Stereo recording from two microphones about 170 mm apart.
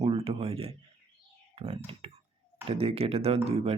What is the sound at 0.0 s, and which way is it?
Speech, 35° right (ahead or behind).